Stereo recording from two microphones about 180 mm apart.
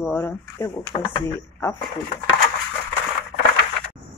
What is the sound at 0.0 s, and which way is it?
Speech, 10° left (ahead or behind).